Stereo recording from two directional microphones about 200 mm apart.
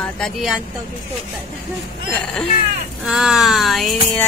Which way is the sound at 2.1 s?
Centre (ahead or behind).